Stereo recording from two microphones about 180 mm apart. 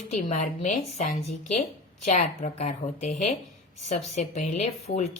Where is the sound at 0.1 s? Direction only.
40° left (ahead or behind).